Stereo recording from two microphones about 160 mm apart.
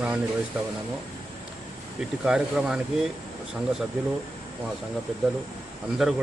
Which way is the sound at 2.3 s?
5° right (ahead or behind).